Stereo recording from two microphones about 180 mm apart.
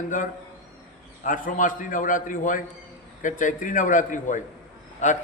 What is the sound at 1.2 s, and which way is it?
A man's voice, 45° left (ahead or behind).